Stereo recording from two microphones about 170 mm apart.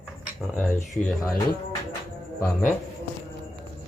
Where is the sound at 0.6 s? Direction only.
10° left (ahead or behind).